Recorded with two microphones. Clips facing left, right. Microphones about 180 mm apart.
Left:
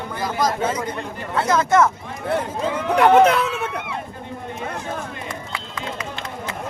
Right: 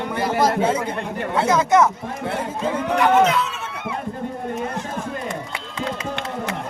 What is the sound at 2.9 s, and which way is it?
Speech, 60° left (ahead or behind).